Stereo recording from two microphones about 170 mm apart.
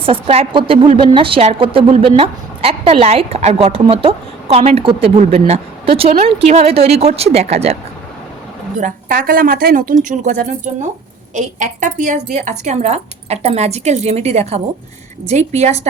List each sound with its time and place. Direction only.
0.0 s a woman's voice: 35° right (ahead or behind)
8.8 s a woman's voice: 55° right (ahead or behind)